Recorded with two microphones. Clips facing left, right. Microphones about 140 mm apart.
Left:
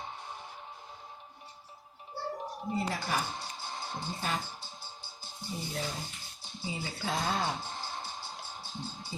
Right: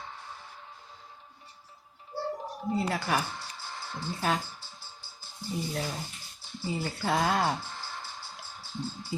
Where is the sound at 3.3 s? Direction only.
20° left (ahead or behind).